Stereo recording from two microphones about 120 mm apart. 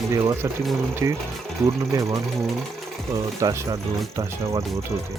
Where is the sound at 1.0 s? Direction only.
25° right (ahead or behind).